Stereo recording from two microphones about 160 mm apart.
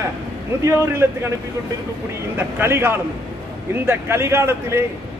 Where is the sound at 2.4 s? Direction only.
15° right (ahead or behind).